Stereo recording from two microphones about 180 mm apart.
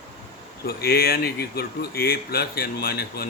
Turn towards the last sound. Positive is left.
turn(degrees=60)  # may be behind; listen again after turning